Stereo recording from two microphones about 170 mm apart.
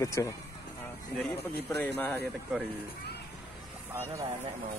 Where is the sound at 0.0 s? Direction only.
20° left (ahead or behind).